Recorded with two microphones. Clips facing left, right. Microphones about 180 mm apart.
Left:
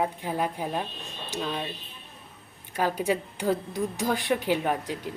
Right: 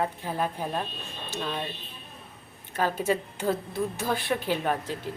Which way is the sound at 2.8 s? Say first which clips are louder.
Even; 15° left (ahead or behind).